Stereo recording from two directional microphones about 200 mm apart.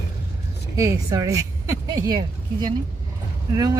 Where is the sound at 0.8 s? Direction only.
15° right (ahead or behind).